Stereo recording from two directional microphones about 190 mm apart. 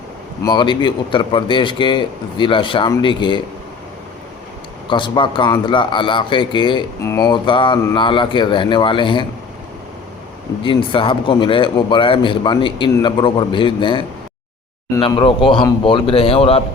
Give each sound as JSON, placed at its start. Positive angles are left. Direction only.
{"t": 0.4, "sound": "a man's voice", "side_deg": 25}
{"t": 4.9, "sound": "a man's voice", "side_deg": 25}
{"t": 10.6, "sound": "a man's voice", "side_deg": 25}
{"t": 15.0, "sound": "a man's voice", "side_deg": 25}